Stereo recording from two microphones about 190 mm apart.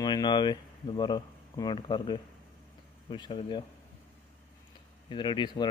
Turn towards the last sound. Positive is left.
turn(degrees=25)  # may be behind; listen again after turning